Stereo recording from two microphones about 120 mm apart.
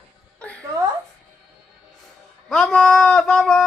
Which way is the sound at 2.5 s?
5° left (ahead or behind).